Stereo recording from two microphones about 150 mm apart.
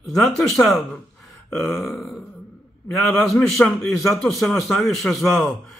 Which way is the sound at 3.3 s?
5° left (ahead or behind).